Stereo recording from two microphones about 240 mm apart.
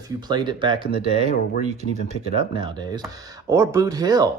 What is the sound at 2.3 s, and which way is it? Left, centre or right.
Speech, centre.